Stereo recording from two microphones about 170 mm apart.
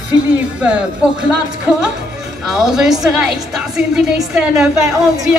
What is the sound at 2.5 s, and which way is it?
A woman's voice, 5° right (ahead or behind).